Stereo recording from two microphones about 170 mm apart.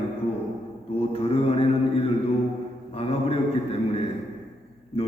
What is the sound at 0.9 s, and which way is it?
Mantra, 35° left (ahead or behind).